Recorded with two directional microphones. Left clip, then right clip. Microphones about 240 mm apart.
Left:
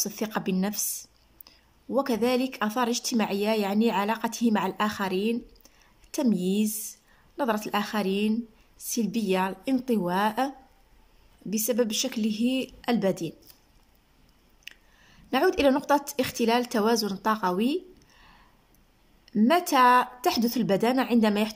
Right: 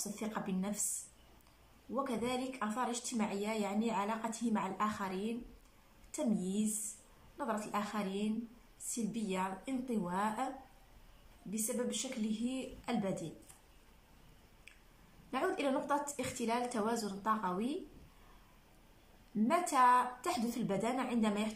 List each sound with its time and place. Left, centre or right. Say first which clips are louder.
0.2 s speech: left 9 dB; left
1.9 s speech: left 12 dB; left
11.5 s speech: left 13 dB; left
15.3 s speech: left 12 dB; left
19.4 s speech: left 9 dB; left